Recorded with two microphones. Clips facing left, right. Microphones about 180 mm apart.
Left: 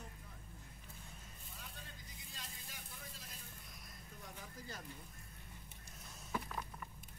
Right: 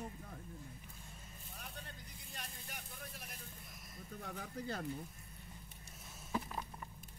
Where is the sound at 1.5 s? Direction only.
60° right (ahead or behind).